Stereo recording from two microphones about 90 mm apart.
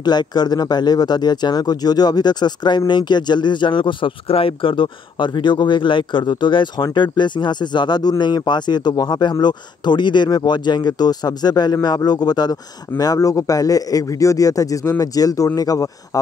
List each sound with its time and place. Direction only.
0.0 s speech: 50° left (ahead or behind)